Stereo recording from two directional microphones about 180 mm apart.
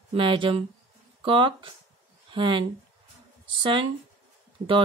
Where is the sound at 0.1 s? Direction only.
30° right (ahead or behind).